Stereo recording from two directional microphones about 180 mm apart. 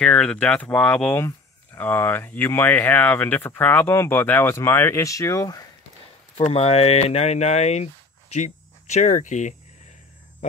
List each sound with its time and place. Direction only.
0.0 s speech: 5° left (ahead or behind)
6.3 s speech: 35° left (ahead or behind)